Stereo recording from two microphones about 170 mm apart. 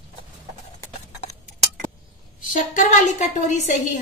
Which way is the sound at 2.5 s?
45° left (ahead or behind).